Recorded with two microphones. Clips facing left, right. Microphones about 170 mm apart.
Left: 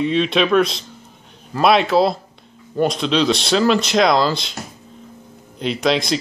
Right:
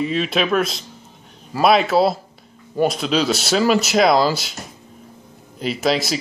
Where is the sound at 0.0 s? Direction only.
5° right (ahead or behind).